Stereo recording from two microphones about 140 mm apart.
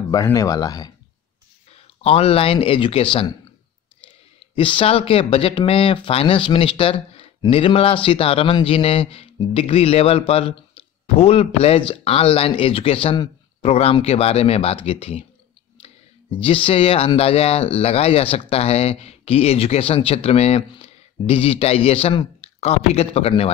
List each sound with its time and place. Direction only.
0.1 s speech: 25° left (ahead or behind)
2.0 s speech: 45° left (ahead or behind)
4.6 s speech: 40° left (ahead or behind)